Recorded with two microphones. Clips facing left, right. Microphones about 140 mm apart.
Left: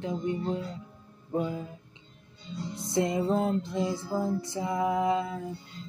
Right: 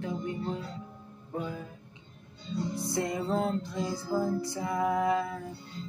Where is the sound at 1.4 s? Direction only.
20° left (ahead or behind).